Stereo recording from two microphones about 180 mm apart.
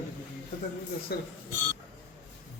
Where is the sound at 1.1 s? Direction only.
60° left (ahead or behind).